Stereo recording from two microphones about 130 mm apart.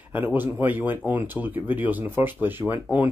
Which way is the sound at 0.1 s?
15° right (ahead or behind).